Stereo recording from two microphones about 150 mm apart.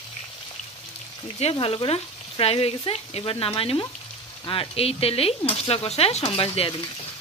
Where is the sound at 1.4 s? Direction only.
40° left (ahead or behind).